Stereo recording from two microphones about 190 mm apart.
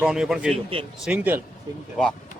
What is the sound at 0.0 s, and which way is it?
Speech, 5° right (ahead or behind).